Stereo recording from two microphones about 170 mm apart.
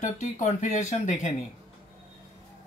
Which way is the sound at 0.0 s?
45° left (ahead or behind).